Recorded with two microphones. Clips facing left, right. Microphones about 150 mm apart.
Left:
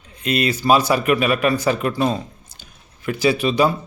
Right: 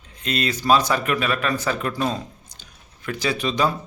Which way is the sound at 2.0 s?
5° left (ahead or behind).